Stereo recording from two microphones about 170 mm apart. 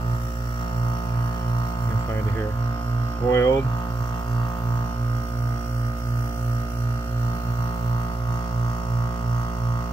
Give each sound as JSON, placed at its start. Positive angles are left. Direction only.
{"t": 3.3, "sound": "mains hum", "side_deg": 15}